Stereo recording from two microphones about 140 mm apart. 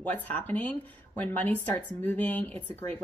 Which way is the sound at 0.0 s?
10° left (ahead or behind).